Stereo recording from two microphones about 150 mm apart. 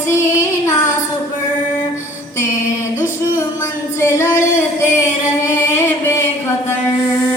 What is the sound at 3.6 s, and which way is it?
Singing, 20° left (ahead or behind).